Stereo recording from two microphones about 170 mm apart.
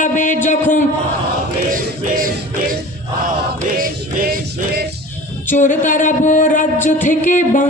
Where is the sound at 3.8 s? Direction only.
55° right (ahead or behind).